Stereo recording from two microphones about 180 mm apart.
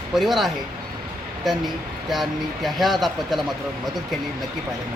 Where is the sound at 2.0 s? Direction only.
Centre (ahead or behind).